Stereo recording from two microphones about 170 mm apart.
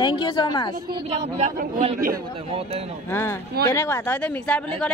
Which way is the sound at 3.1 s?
15° left (ahead or behind).